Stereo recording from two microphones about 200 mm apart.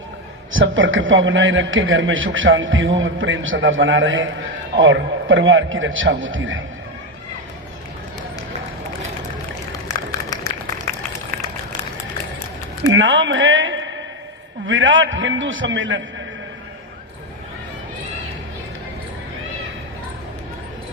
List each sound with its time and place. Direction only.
0.5 s a man's voice: 75° right (ahead or behind)
12.9 s a man's voice: 70° right (ahead or behind)